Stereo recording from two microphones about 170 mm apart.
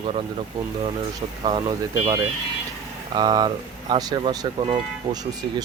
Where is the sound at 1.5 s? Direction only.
25° right (ahead or behind).